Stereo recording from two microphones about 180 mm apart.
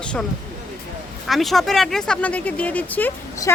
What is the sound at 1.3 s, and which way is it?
Speech, centre (ahead or behind).